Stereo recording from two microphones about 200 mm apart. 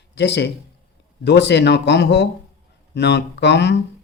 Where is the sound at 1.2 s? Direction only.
60° left (ahead or behind).